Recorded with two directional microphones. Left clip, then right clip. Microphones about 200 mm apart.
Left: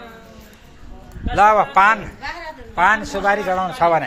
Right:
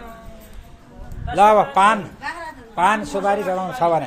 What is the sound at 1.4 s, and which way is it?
Speech, 15° right (ahead or behind).